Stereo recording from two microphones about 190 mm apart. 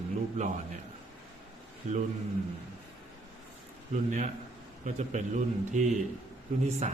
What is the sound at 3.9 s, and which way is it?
A man's voice, 40° right (ahead or behind).